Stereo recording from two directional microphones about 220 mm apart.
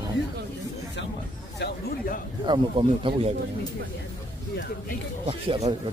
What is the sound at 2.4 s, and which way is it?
Speech, 20° right (ahead or behind).